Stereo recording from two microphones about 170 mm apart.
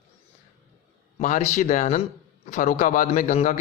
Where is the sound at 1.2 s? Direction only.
45° left (ahead or behind).